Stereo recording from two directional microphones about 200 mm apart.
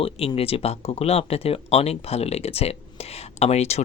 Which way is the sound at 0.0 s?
30° left (ahead or behind).